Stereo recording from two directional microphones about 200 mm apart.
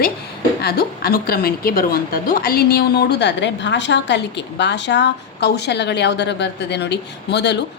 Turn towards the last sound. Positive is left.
turn(degrees=60)  # may be behind; listen again after turning